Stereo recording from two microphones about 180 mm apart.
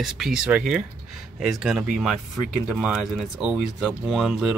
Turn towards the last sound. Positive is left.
turn(degrees=-5)  # may be behind; listen again after turning